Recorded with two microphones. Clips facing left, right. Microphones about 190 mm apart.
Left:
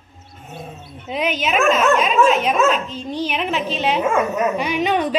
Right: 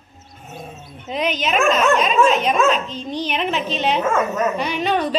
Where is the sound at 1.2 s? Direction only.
5° left (ahead or behind).